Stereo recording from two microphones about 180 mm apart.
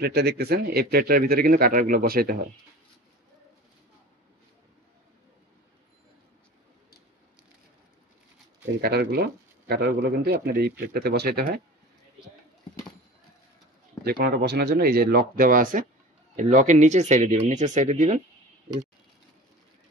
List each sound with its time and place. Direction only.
0.0 s speech: 65° right (ahead or behind)
8.8 s speech: 60° right (ahead or behind)
14.0 s speech: 60° right (ahead or behind); by 18.2 s 40° right (ahead or behind)